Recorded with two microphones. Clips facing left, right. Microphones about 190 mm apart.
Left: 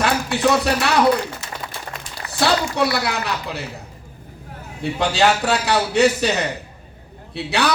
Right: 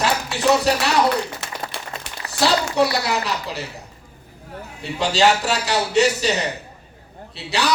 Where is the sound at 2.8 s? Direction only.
60° left (ahead or behind).